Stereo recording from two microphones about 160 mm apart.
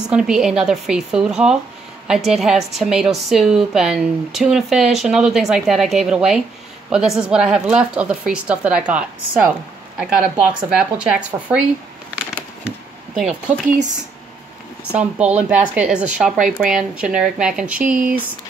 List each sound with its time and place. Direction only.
0.1 s a woman's voice: 5° right (ahead or behind)
12.6 s a sound: 5° right (ahead or behind)
14.9 s a woman's voice: 5° right (ahead or behind)